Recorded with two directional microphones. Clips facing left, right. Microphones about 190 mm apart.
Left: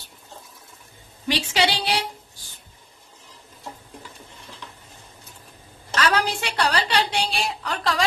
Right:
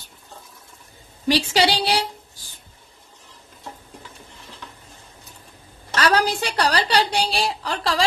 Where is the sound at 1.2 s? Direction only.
35° right (ahead or behind).